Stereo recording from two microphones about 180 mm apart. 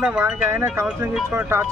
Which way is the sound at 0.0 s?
5° right (ahead or behind).